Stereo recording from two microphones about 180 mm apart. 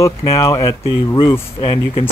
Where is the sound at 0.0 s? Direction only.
20° left (ahead or behind).